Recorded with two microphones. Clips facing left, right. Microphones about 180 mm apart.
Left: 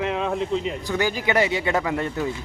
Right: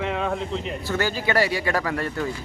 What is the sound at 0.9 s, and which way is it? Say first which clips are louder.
Speech: even; 15° left (ahead or behind).